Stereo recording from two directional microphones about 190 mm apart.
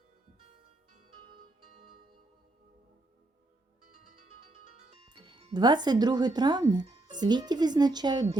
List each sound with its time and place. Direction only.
5.0 s speech: 25° right (ahead or behind)